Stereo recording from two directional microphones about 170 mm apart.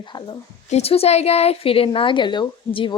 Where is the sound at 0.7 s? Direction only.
35° left (ahead or behind).